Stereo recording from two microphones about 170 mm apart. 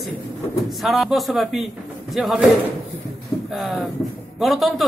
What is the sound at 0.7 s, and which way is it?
Speech, centre (ahead or behind).